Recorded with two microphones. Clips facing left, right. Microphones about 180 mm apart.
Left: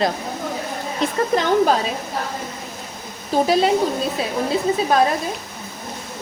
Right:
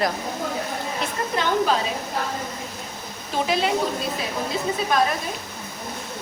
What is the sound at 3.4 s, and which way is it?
Speech, 40° left (ahead or behind).